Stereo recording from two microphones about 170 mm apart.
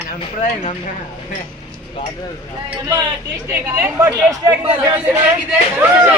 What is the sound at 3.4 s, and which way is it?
A woman's voice, 10° right (ahead or behind).